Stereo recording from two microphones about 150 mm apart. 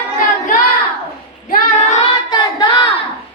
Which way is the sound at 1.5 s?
60° left (ahead or behind).